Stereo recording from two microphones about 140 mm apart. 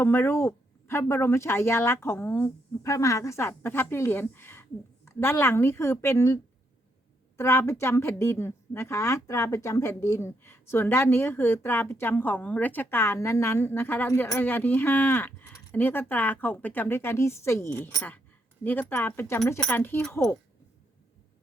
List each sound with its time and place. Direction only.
0.0 s a woman's voice: 15° left (ahead or behind)